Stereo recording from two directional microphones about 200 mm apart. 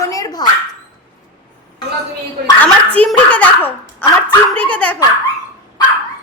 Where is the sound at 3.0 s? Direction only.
5° left (ahead or behind).